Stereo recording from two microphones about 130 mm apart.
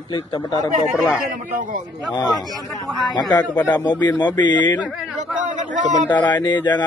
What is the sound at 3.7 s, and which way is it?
Speech, 35° left (ahead or behind).